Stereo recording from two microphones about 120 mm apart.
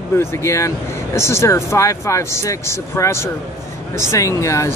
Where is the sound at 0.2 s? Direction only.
20° left (ahead or behind).